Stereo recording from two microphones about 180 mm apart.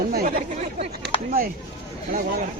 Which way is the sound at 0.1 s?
55° right (ahead or behind).